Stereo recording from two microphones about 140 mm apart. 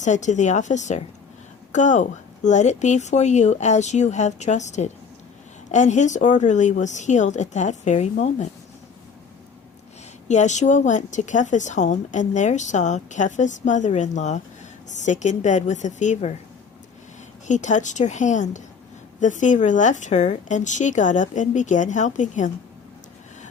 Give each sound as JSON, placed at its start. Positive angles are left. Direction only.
{"t": 0.0, "sound": "a woman's voice", "side_deg": 60}
{"t": 10.2, "sound": "a woman's voice", "side_deg": 55}
{"t": 17.5, "sound": "a woman's voice", "side_deg": 60}